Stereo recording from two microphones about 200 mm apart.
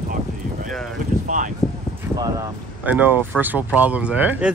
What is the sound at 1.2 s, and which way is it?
Speech, 40° right (ahead or behind).